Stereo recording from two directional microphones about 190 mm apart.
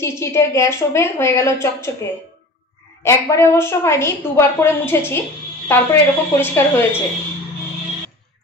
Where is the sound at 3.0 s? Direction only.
15° left (ahead or behind).